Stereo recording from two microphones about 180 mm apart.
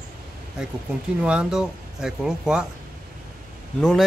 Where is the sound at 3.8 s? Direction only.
Centre (ahead or behind).